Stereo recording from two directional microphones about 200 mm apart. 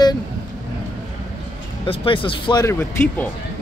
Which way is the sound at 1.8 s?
25° left (ahead or behind).